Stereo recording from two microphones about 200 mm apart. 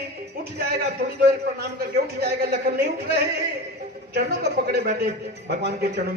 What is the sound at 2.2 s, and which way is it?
A man's voice, 55° right (ahead or behind).